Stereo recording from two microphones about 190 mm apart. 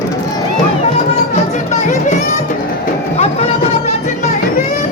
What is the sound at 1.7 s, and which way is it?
Music, 40° left (ahead or behind).